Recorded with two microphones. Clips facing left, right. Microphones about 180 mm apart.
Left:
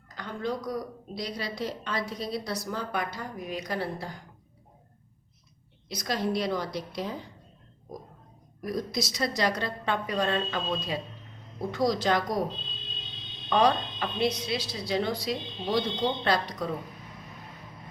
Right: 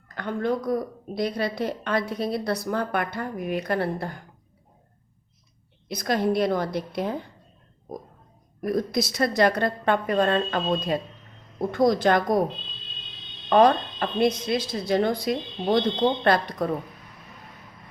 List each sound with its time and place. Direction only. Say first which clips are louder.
0.1 s a woman's voice: right 6 dB; 60° right (ahead or behind)
5.9 s a woman's voice: right 6 dB; 55° right (ahead or behind)
8.6 s a woman's voice: right 6 dB; 55° right (ahead or behind)
13.5 s speech: right 6 dB; 50° right (ahead or behind)